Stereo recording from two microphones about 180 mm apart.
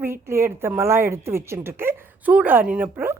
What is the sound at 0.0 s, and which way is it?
A woman's voice, 15° right (ahead or behind).